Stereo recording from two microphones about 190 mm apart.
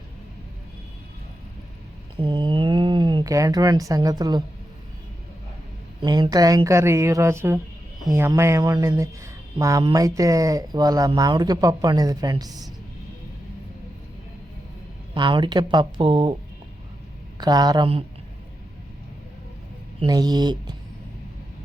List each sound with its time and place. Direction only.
2.1 s speech: 25° right (ahead or behind)
6.0 s speech: 25° right (ahead or behind)
15.1 s speech: 25° right (ahead or behind)
17.4 s speech: 20° right (ahead or behind)
20.1 s speech: 20° right (ahead or behind)